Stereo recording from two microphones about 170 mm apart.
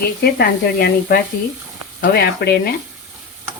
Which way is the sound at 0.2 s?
70° left (ahead or behind).